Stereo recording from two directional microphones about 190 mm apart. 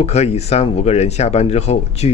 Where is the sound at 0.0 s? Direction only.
35° left (ahead or behind).